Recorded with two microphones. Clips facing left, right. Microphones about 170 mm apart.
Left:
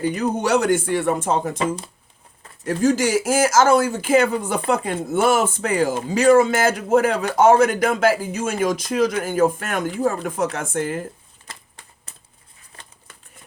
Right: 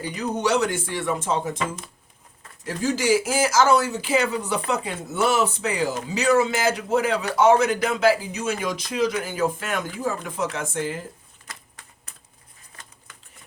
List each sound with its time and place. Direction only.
0.1 s a man's voice: 50° left (ahead or behind)
1.5 s speech: 30° left (ahead or behind)
2.6 s a man's voice: 50° left (ahead or behind)
11.5 s a sound: 30° left (ahead or behind)